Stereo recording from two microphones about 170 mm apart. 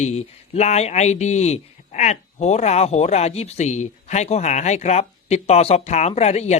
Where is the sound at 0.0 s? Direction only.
40° left (ahead or behind).